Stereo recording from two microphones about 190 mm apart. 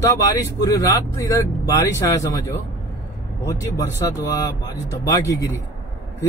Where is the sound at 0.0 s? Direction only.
15° left (ahead or behind).